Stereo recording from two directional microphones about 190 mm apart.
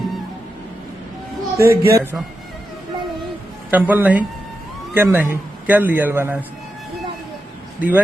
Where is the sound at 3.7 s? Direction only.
10° right (ahead or behind).